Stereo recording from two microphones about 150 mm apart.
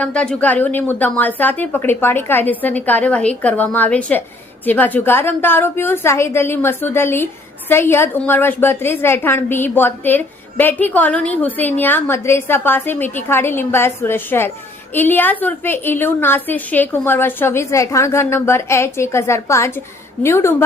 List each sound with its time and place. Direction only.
0.0 s a woman's voice: 5° left (ahead or behind)